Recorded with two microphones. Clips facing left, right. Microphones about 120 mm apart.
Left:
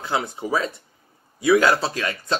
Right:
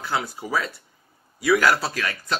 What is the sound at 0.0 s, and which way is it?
Speech, 20° left (ahead or behind).